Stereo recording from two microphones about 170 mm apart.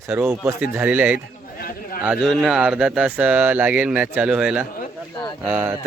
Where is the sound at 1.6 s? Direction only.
60° left (ahead or behind).